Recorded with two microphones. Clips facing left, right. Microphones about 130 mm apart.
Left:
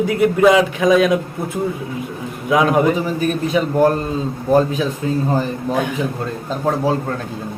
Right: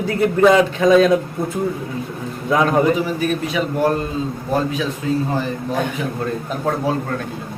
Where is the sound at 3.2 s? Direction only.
40° left (ahead or behind).